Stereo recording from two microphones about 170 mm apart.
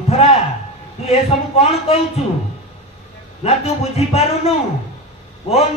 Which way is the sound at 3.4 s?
35° left (ahead or behind).